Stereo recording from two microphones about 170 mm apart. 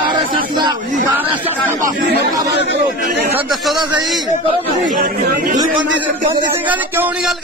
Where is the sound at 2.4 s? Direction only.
90° right.